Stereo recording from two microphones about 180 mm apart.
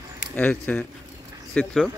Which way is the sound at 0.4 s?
10° left (ahead or behind).